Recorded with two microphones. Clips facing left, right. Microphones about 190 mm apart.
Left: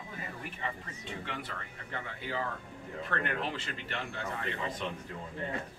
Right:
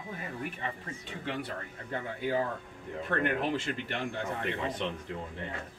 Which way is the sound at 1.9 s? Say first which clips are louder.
Right 7 dB; 45° right (ahead or behind).